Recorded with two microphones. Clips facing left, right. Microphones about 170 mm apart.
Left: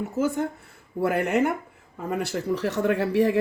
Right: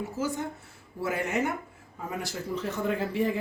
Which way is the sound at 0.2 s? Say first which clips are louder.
Left 8 dB; 55° left (ahead or behind).